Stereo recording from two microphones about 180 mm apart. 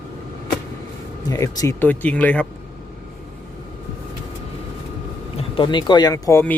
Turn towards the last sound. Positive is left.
turn(degrees=10)  # may be behind; listen again after turning